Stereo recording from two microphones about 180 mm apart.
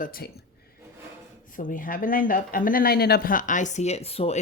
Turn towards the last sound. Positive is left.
turn(degrees=35)  # may be behind; listen again after turning